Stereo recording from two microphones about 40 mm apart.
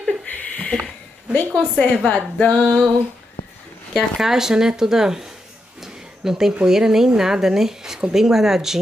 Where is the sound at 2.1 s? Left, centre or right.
Centre.